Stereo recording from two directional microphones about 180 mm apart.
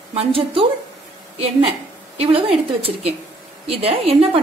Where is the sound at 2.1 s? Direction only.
30° right (ahead or behind).